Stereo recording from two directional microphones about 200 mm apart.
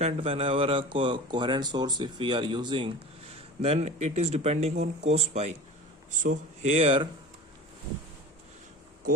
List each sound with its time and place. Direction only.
0.0 s speech: 30° right (ahead or behind)